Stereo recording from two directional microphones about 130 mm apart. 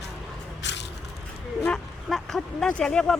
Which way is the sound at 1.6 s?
5° left (ahead or behind).